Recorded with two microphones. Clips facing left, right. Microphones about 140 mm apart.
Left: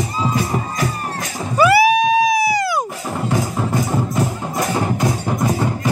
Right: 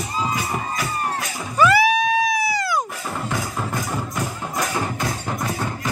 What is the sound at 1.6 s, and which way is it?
Music, 10° left (ahead or behind).